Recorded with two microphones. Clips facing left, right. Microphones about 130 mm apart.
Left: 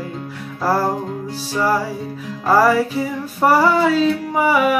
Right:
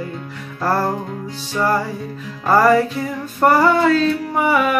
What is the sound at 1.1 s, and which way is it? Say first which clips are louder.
Music: left 2 dB; 35° left (ahead or behind).